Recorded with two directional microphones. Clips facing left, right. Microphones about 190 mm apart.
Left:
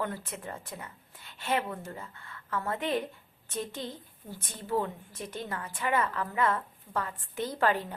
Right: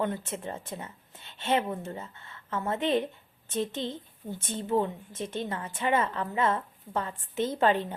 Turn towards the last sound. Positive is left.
turn(degrees=-25)  # may be behind; listen again after turning